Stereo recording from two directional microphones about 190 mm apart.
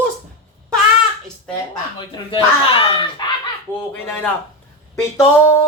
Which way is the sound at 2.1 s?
25° left (ahead or behind).